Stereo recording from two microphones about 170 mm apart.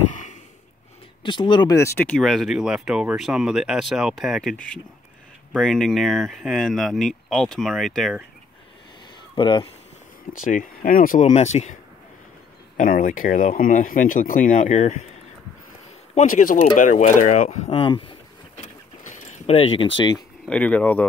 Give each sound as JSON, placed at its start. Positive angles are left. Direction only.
{"t": 0.1, "sound": "a sound", "side_deg": 45}
{"t": 1.2, "sound": "speech", "side_deg": 30}
{"t": 9.3, "sound": "speech", "side_deg": 30}
{"t": 10.4, "sound": "speech", "side_deg": 50}
{"t": 12.7, "sound": "speech", "side_deg": 50}
{"t": 16.2, "sound": "speech", "side_deg": 50}
{"t": 18.6, "sound": "a sound", "side_deg": 45}
{"t": 20.0, "sound": "speech", "side_deg": 25}
{"t": 20.4, "sound": "speech", "side_deg": 10}